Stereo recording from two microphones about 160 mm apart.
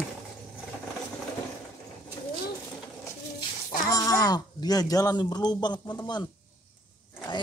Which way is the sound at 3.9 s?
20° left (ahead or behind).